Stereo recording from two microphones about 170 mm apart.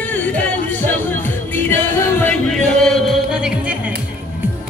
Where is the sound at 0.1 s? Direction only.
10° left (ahead or behind).